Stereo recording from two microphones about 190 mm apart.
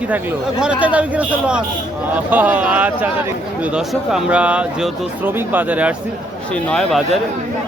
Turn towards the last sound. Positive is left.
turn(degrees=5)  # may be behind; listen again after turning